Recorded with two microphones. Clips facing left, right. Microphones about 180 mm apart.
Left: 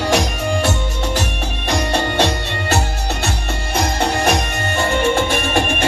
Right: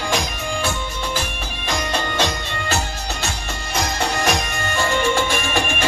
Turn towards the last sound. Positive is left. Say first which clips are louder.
# left 4 dB
turn(degrees=55)  # may be behind; listen again after turning